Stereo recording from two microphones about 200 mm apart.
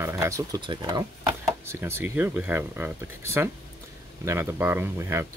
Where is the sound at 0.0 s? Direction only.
15° right (ahead or behind).